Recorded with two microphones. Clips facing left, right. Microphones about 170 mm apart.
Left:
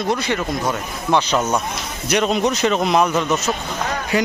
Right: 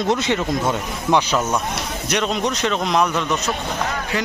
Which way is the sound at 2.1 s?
5° left (ahead or behind).